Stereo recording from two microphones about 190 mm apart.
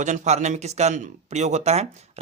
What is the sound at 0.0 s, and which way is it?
Speech, 40° right (ahead or behind).